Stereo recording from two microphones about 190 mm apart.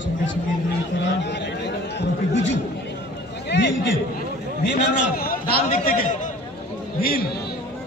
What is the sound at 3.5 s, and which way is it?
Chatter, 70° left (ahead or behind).